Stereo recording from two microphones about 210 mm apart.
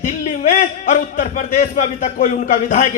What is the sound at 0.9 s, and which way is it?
A man's voice, 40° left (ahead or behind).